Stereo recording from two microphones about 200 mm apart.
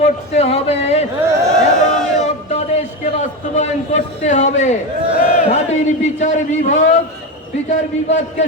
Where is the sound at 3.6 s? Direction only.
35° left (ahead or behind).